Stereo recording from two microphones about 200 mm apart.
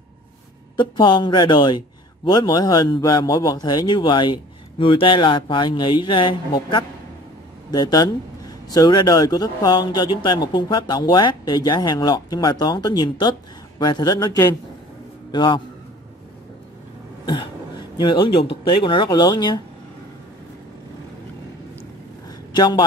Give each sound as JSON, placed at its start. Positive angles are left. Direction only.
{"t": 0.7, "sound": "speech", "side_deg": 25}
{"t": 17.3, "sound": "speech", "side_deg": 20}
{"t": 22.5, "sound": "a man's voice", "side_deg": 20}